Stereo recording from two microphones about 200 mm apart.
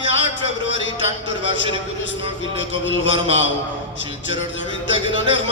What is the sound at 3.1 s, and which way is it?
Speech, 30° right (ahead or behind).